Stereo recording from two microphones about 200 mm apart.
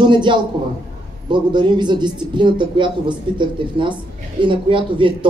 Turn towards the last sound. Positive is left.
turn(degrees=-25)  # may be behind; listen again after turning